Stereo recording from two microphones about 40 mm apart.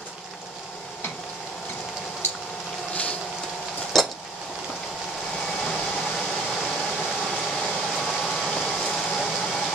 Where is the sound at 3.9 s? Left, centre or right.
Centre.